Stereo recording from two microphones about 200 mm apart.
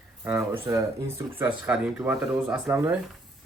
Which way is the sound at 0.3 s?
10° right (ahead or behind).